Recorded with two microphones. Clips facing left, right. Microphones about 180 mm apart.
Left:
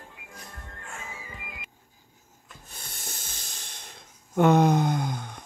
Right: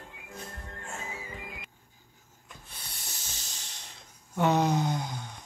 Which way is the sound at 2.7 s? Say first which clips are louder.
Left 5 dB; 45° left (ahead or behind).